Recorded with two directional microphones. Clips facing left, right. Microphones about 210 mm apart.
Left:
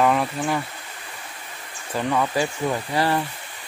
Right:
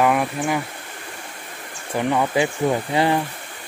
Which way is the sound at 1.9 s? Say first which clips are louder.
Right 3 dB; 15° right (ahead or behind).